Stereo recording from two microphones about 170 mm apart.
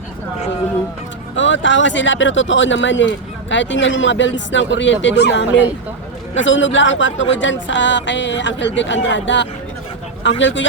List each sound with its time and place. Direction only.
1.4 s speech: 90° left